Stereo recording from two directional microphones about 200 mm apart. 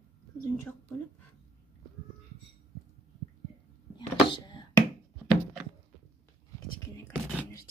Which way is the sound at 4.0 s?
20° left (ahead or behind).